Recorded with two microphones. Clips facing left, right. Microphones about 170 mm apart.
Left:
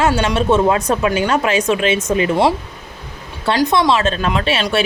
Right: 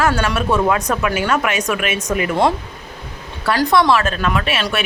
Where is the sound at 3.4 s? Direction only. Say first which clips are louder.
Even; 20° left (ahead or behind).